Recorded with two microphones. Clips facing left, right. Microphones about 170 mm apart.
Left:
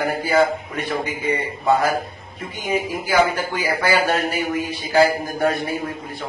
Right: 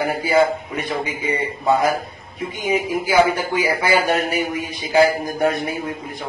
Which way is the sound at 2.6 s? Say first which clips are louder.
Right 2 dB; 15° right (ahead or behind).